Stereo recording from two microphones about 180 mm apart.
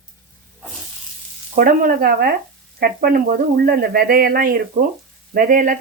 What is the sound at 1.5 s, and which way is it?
Speech, 50° right (ahead or behind).